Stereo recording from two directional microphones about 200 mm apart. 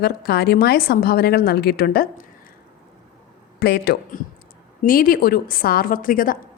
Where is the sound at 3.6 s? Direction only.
50° left (ahead or behind).